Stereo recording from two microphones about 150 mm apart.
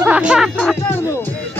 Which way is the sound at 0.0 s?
10° right (ahead or behind).